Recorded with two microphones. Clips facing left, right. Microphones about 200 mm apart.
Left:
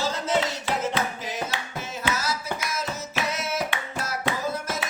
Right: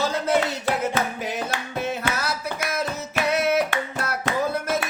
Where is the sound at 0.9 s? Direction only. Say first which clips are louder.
Right 3 dB; 55° right (ahead or behind).